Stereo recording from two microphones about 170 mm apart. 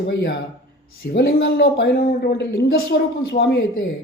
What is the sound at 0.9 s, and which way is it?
A man's voice, 65° left (ahead or behind).